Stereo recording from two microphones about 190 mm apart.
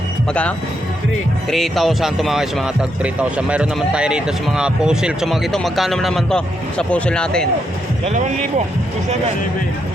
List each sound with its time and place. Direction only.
1.5 s speech: centre (ahead or behind)
8.0 s speech: 35° right (ahead or behind)